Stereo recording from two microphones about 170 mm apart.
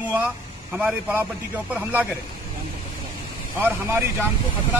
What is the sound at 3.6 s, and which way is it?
Speech, 10° right (ahead or behind).